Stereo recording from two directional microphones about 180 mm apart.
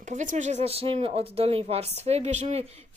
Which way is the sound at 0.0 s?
45° right (ahead or behind).